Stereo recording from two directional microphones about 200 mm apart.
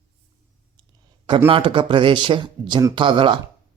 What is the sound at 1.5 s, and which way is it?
Speech, 25° right (ahead or behind).